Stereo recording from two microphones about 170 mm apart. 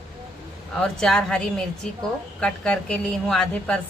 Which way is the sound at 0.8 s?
5° left (ahead or behind).